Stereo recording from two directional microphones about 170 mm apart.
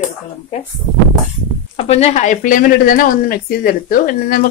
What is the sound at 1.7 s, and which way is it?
Speech, 35° left (ahead or behind).